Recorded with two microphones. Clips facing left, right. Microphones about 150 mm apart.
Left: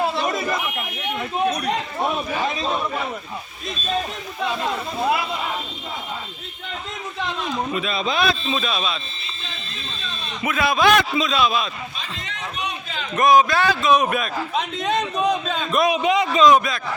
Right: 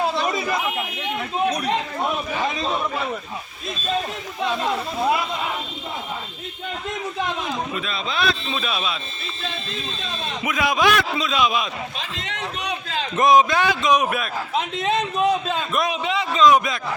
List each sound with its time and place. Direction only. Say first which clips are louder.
0.1 s a sound: even; centre (ahead or behind)
2.0 s a man's voice: left 1 dB; 5° left (ahead or behind)
4.4 s a man's voice: right 1 dB; centre (ahead or behind)
7.7 s a man's voice: left 4 dB; 5° left (ahead or behind)
8.4 s a man's voice: left 2 dB; 5° right (ahead or behind)
10.4 s a man's voice: left 2 dB; 15° right (ahead or behind)
11.9 s speech: right 2 dB; 70° right (ahead or behind)
13.1 s a man's voice: even; 20° right (ahead or behind)
15.8 s a man's voice: left 5 dB; 10° left (ahead or behind)